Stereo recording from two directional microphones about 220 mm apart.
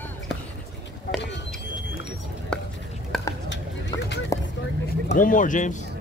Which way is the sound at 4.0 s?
50° left (ahead or behind).